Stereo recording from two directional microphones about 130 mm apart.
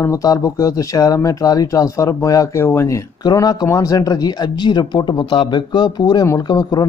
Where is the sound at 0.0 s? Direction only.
25° left (ahead or behind).